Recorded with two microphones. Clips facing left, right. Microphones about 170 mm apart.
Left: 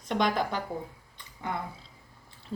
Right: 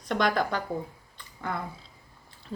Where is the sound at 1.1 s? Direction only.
20° left (ahead or behind).